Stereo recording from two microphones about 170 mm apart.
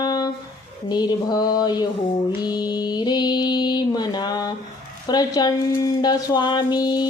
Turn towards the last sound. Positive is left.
turn(degrees=25)  # may be behind; listen again after turning